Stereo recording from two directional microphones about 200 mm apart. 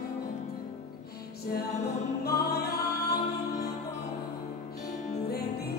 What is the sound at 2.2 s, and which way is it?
Music, 50° left (ahead or behind).